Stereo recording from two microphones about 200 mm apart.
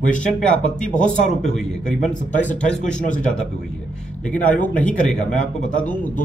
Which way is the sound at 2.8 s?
40° left (ahead or behind).